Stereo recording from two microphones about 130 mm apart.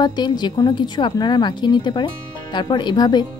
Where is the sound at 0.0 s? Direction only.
35° left (ahead or behind).